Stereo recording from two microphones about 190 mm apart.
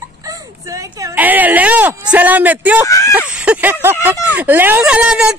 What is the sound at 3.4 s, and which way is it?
Speech, 5° right (ahead or behind).